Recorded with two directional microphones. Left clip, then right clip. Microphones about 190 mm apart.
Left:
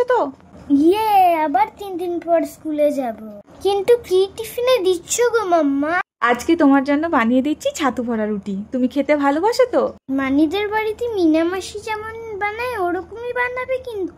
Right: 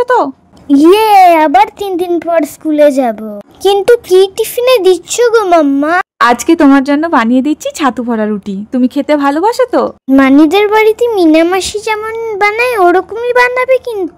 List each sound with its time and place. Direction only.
0.0 s speech: 20° right (ahead or behind)
0.7 s a child's voice: 55° right (ahead or behind)
3.6 s a child's voice: 35° right (ahead or behind)
10.0 s a child's voice: 50° right (ahead or behind)